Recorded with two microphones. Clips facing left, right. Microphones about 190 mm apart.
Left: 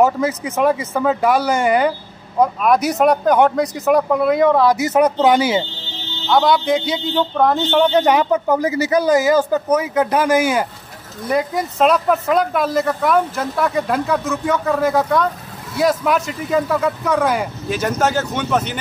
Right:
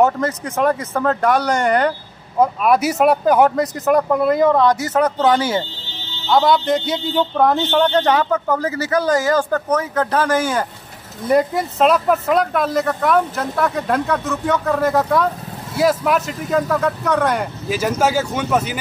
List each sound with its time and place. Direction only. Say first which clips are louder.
0.0 s speech: left 1 dB; 5° left (ahead or behind)
6.2 s speech: even; centre (ahead or behind)
7.9 s speech: left 2 dB; 15° left (ahead or behind)
11.3 s speech: right 2 dB; centre (ahead or behind)